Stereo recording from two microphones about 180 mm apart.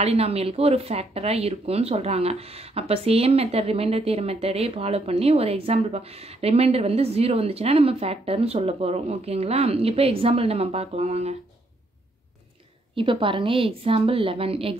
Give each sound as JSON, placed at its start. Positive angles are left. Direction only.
{"t": 0.0, "sound": "speech", "side_deg": -35}
{"t": 12.9, "sound": "speech", "side_deg": -30}